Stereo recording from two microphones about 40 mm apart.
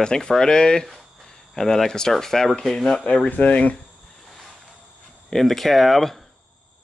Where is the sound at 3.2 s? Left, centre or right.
Left.